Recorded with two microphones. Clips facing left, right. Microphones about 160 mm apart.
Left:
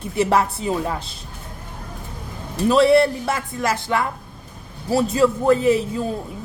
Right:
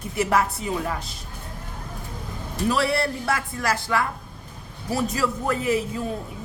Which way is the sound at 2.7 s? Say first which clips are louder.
Left 9 dB; 25° left (ahead or behind).